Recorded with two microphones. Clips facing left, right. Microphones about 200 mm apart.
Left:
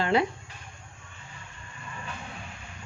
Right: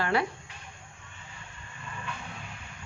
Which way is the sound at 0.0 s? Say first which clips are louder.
Left 3 dB; 20° left (ahead or behind).